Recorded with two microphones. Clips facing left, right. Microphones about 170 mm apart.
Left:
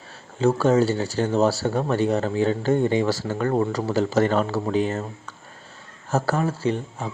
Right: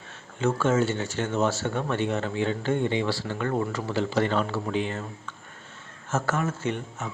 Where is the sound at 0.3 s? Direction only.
35° left (ahead or behind).